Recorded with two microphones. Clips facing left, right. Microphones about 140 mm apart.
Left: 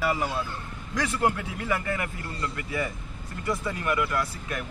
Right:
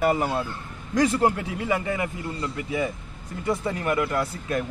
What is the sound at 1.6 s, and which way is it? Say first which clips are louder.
Speech: right 3 dB; 20° right (ahead or behind).